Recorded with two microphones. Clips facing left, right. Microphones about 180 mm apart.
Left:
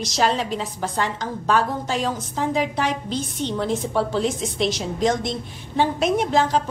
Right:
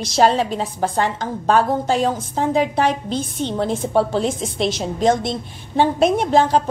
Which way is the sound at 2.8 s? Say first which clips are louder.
Right 5 dB; 50° right (ahead or behind).